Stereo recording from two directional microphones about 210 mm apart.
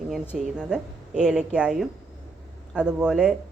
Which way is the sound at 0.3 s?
5° right (ahead or behind).